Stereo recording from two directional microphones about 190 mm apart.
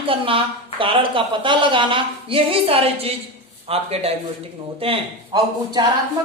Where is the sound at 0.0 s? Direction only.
30° right (ahead or behind).